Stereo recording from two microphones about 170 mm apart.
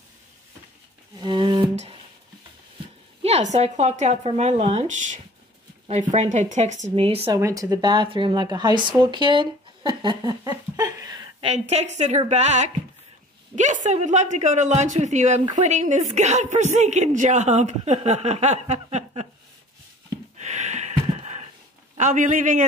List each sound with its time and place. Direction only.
1.2 s music: 25° right (ahead or behind)
3.2 s a woman's voice: 40° right (ahead or behind)
7.3 s speech: 20° right (ahead or behind)
11.4 s a woman's voice: 40° right (ahead or behind)
20.3 s a sound: 40° right (ahead or behind)
21.9 s a woman's voice: 45° right (ahead or behind)